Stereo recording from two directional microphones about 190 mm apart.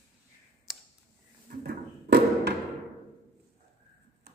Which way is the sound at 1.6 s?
60° right (ahead or behind).